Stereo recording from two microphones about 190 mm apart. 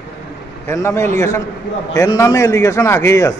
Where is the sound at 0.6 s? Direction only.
15° left (ahead or behind).